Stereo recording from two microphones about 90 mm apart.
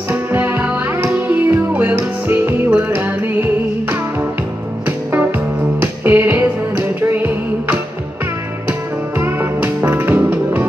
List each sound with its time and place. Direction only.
0.1 s music: 20° right (ahead or behind)
4.8 s music: 20° right (ahead or behind)